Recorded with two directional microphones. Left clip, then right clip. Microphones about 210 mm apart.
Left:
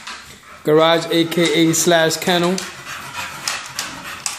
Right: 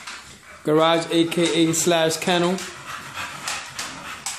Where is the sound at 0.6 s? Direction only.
Centre (ahead or behind).